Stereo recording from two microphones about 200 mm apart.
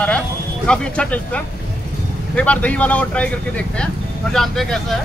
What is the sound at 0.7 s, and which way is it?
Speech, 5° left (ahead or behind).